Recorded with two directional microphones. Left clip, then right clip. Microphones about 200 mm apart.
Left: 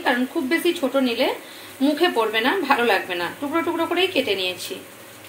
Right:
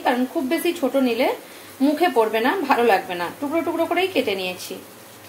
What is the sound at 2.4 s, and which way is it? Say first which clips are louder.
Speech: even; 10° right (ahead or behind).